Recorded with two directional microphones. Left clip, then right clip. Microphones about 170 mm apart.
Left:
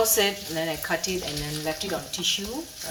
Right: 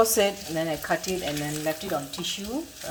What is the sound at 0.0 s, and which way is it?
Speech, 70° right (ahead or behind).